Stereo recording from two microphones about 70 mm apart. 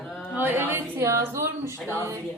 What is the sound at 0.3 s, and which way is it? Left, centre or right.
Speech, right.